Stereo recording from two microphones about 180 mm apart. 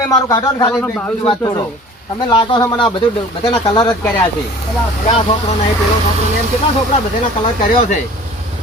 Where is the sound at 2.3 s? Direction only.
25° left (ahead or behind).